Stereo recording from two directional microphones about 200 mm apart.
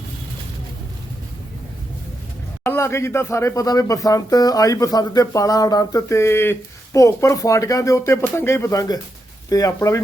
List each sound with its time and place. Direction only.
2.6 s speech: 15° left (ahead or behind)